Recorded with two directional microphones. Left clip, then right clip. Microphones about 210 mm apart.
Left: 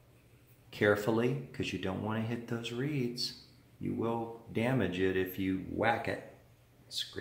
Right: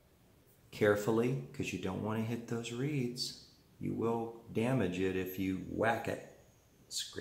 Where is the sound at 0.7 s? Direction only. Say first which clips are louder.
Left 1 dB; 15° left (ahead or behind).